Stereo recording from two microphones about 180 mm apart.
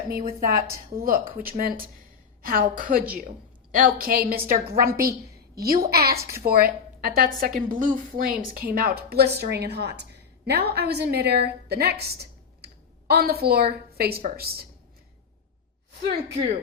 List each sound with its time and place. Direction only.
0.1 s a woman's voice: 55° right (ahead or behind)